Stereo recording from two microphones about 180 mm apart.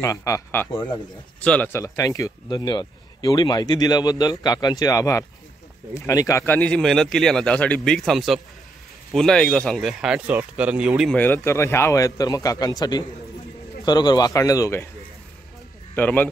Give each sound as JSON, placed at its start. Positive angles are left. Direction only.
{"t": 0.0, "sound": "a man's voice", "side_deg": 15}
{"t": 11.1, "sound": "speech", "side_deg": 10}
{"t": 15.9, "sound": "speech", "side_deg": 10}